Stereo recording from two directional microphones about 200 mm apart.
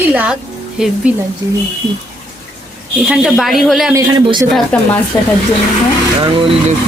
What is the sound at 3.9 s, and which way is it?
Speech, 20° right (ahead or behind).